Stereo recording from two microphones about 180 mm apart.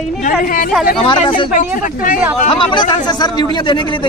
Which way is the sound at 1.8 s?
50° left (ahead or behind).